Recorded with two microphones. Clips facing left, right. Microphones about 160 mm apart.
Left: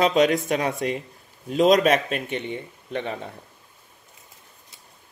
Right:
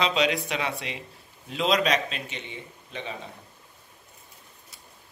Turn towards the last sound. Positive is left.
turn(degrees=60)  # may be behind; listen again after turning